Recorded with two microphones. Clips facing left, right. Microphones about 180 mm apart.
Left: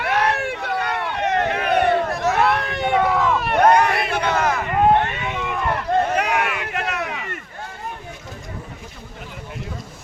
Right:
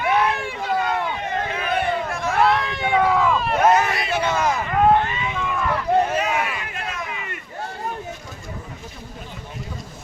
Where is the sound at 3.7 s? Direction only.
60° left (ahead or behind).